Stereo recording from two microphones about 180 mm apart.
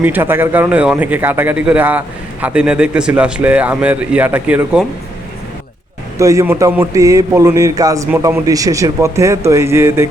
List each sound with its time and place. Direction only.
0.0 s a man's voice: 10° right (ahead or behind)
6.1 s a man's voice: 15° right (ahead or behind)